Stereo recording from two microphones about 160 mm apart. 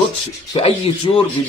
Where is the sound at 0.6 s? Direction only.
35° left (ahead or behind).